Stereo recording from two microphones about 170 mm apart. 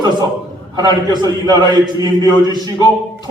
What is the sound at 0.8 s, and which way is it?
A man's voice, 25° right (ahead or behind).